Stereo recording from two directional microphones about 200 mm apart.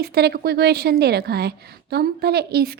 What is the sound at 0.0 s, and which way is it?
A woman's voice, 55° right (ahead or behind).